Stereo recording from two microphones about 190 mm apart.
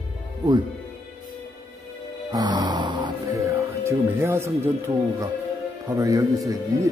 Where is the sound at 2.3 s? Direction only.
20° right (ahead or behind).